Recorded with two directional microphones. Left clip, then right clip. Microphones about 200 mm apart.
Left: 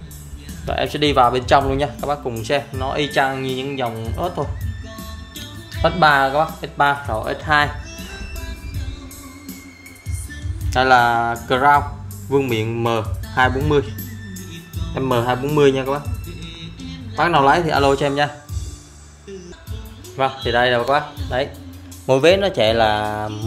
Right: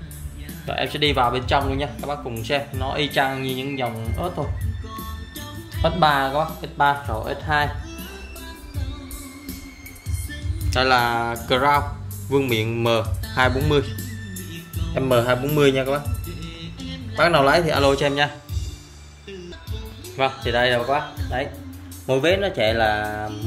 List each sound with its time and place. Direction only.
0.7 s speech: 25° left (ahead or behind)
5.8 s speech: 20° left (ahead or behind)
10.7 s speech: 20° left (ahead or behind)
15.0 s speech: 10° left (ahead or behind)
17.2 s speech: 15° left (ahead or behind)
20.2 s speech: 15° left (ahead or behind)